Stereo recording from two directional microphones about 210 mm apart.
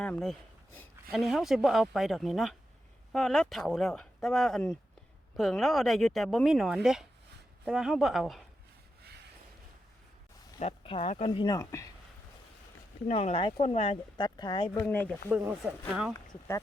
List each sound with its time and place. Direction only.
0.0 s speech: 5° left (ahead or behind)
10.6 s speech: 25° left (ahead or behind)
13.1 s speech: 30° left (ahead or behind)
14.7 s speech: 5° left (ahead or behind)
15.3 s speech: 10° right (ahead or behind)